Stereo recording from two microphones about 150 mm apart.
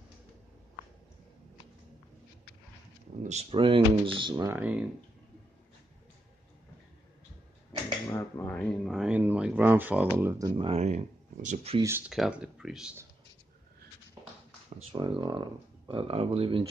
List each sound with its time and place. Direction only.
3.3 s speech: 40° right (ahead or behind)
4.5 s speech: 10° right (ahead or behind)
8.1 s speech: 15° left (ahead or behind); by 10.5 s 15° right (ahead or behind)
10.5 s speech: 35° right (ahead or behind)
10.8 s speech: 45° right (ahead or behind)
12.1 s speech: 5° right (ahead or behind)
14.8 s speech: 35° right (ahead or behind)